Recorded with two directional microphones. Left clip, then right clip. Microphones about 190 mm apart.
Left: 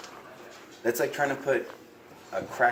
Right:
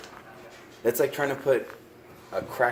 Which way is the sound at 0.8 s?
50° right (ahead or behind).